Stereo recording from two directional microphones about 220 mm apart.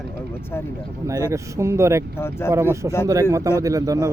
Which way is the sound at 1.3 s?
15° right (ahead or behind).